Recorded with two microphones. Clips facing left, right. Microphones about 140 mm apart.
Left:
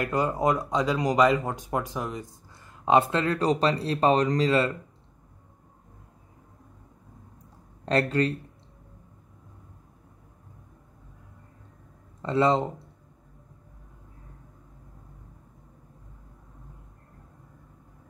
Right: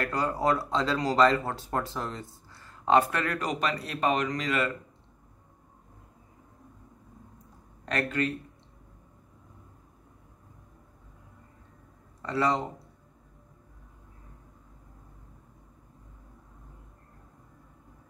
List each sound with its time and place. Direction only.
0.0 s speech: 20° left (ahead or behind)
7.8 s speech: 30° left (ahead or behind)
12.2 s speech: 25° left (ahead or behind)